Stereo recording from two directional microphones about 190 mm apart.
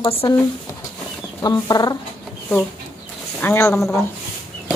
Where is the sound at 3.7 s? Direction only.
Centre (ahead or behind).